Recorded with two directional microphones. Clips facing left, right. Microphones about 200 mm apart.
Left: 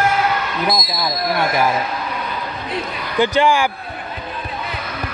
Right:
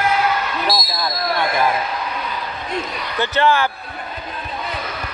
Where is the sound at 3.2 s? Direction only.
15° left (ahead or behind).